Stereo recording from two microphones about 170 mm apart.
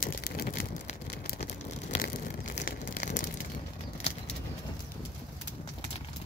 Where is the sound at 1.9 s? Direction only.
75° left (ahead or behind).